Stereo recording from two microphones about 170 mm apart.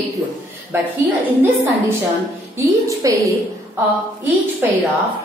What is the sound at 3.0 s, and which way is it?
Speech, 20° right (ahead or behind).